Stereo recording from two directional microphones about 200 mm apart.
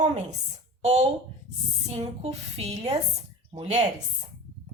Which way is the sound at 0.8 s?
35° right (ahead or behind).